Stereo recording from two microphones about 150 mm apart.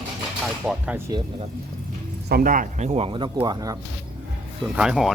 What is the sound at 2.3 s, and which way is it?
Speech, 75° right (ahead or behind).